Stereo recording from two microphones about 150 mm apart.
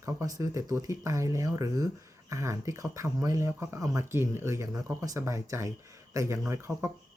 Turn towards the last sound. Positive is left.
turn(degrees=-20)  # may be behind; listen again after turning